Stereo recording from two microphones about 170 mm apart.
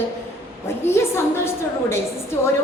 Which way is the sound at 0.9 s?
15° left (ahead or behind).